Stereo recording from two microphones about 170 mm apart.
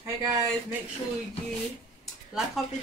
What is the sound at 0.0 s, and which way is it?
Speech, 20° right (ahead or behind).